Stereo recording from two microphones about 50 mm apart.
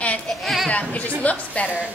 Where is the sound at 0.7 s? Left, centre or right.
Left.